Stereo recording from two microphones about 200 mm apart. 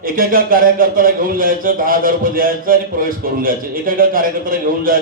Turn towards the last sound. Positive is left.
turn(degrees=-45)  # may be behind; listen again after turning